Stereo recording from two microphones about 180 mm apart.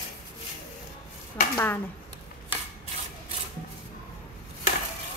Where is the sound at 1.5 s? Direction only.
10° left (ahead or behind).